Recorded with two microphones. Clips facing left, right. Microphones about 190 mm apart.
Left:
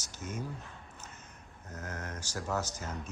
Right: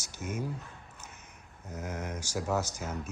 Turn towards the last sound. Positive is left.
turn(degrees=-10)  # may be behind; listen again after turning